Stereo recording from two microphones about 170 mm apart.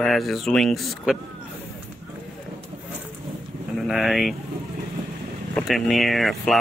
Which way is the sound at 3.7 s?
Centre (ahead or behind).